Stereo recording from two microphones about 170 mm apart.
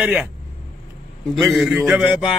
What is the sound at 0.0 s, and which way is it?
Speech, 10° right (ahead or behind).